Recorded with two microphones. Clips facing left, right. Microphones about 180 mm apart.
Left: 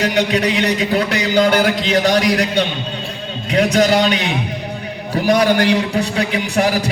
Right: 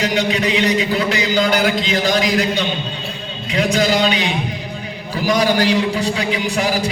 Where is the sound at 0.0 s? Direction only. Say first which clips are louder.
Left 2 dB; 60° left (ahead or behind).